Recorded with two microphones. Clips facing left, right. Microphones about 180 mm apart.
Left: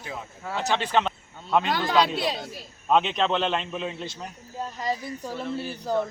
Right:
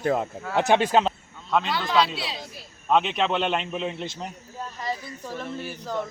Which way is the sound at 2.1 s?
50° left (ahead or behind).